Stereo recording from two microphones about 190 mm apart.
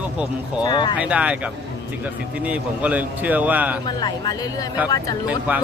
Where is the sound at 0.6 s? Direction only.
25° left (ahead or behind).